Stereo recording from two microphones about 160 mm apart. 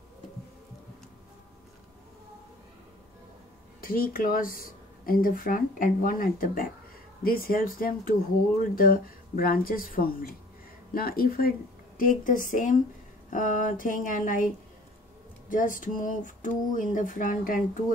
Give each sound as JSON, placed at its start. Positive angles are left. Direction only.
{"t": 3.8, "sound": "speech", "side_deg": 65}
{"t": 15.5, "sound": "speech", "side_deg": 55}